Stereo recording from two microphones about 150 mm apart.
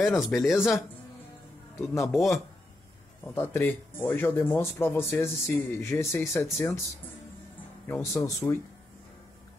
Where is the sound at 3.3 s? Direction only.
15° left (ahead or behind).